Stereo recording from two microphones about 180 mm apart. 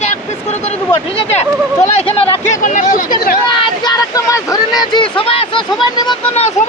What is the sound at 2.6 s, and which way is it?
Speech, 45° left (ahead or behind).